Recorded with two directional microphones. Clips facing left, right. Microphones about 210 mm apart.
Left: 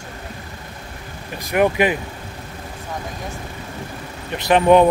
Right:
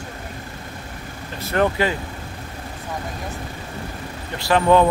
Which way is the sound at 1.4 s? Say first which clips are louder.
Left 3 dB; 15° left (ahead or behind).